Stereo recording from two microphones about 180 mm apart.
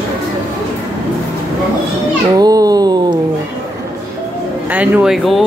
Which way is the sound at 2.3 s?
20° right (ahead or behind).